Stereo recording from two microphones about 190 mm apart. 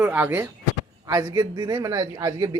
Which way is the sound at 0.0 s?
10° right (ahead or behind).